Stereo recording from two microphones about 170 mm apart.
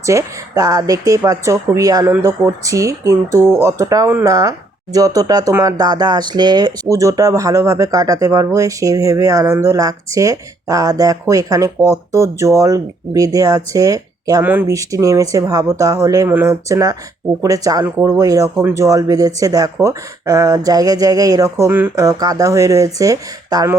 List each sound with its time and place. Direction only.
0.0 s speech: 15° right (ahead or behind)
16.6 s speech: 20° right (ahead or behind)